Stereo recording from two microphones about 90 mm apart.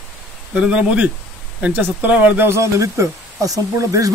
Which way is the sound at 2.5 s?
35° right (ahead or behind).